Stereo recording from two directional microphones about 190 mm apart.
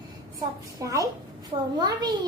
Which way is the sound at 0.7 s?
15° right (ahead or behind).